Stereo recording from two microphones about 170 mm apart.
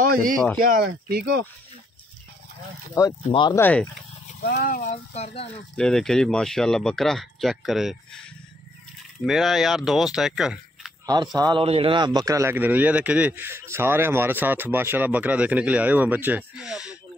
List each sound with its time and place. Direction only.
0.0 s speech: 55° right (ahead or behind); by 1.4 s 80° right
2.9 s speech: 20° left (ahead or behind)
3.5 s speech: 15° left (ahead or behind)
4.4 s speech: 65° left (ahead or behind)
4.9 s speech: 40° left (ahead or behind)
5.8 s speech: 5° left (ahead or behind)
9.2 s speech: centre (ahead or behind)
11.3 s a man's voice: 25° right (ahead or behind); by 17.0 s 5° right (ahead or behind)